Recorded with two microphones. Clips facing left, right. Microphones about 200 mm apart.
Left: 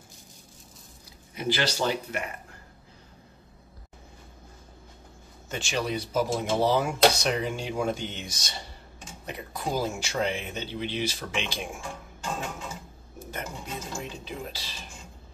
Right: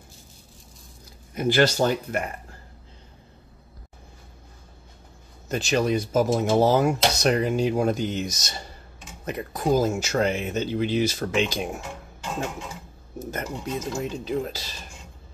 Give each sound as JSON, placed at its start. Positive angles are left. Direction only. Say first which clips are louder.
{"t": 1.3, "sound": "speech", "louder": "right 8 dB", "side_deg": -50}
{"t": 5.5, "sound": "speech", "louder": "right 7 dB", "side_deg": -40}
{"t": 13.3, "sound": "speech", "louder": "right 6 dB", "side_deg": -45}